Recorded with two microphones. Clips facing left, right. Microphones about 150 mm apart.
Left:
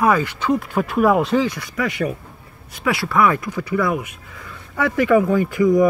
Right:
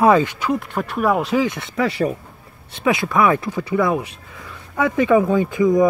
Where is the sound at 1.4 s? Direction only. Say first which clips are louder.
Right 2 dB; 25° right (ahead or behind).